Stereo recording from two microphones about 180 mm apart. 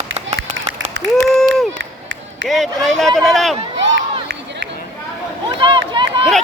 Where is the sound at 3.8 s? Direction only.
90° right.